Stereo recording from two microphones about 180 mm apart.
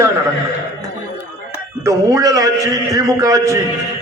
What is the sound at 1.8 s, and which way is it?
A man's voice, 15° right (ahead or behind).